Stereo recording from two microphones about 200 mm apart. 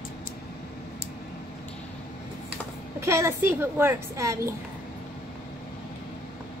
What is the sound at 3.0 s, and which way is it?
A woman's voice, 15° right (ahead or behind).